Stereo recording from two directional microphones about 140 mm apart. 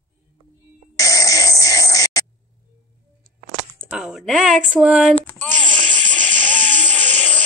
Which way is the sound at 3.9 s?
5° right (ahead or behind).